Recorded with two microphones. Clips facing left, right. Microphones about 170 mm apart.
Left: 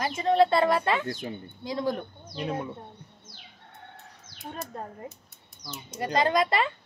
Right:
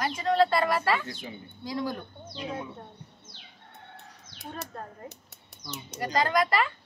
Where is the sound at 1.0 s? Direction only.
50° left (ahead or behind).